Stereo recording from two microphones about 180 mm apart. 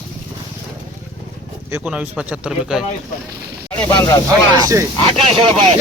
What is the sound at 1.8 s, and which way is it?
Speech, 5° right (ahead or behind).